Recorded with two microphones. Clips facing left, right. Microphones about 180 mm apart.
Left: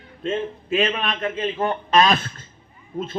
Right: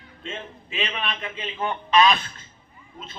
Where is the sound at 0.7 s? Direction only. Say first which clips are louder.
Left 8 dB; 45° left (ahead or behind).